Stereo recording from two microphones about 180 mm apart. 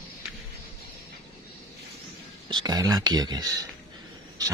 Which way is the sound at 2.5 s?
20° right (ahead or behind).